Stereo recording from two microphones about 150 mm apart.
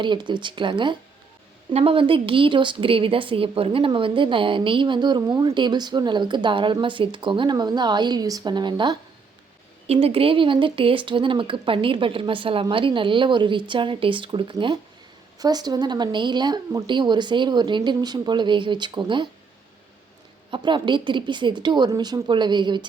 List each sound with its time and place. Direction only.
0.0 s speech: 30° right (ahead or behind)
9.8 s speech: 40° right (ahead or behind)
20.5 s speech: 30° right (ahead or behind)